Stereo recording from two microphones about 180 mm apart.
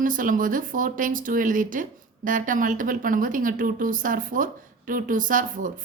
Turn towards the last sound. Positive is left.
turn(degrees=-45)  # may be behind; listen again after turning